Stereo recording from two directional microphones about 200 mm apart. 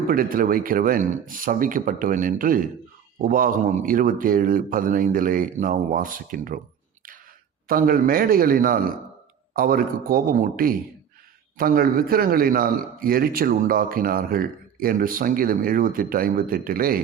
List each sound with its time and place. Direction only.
0.1 s a man's voice: 45° right (ahead or behind)
7.7 s a man's voice: 45° right (ahead or behind)